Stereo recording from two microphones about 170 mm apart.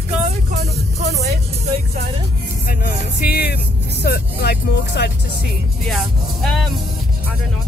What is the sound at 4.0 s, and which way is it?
Speech, 75° left (ahead or behind).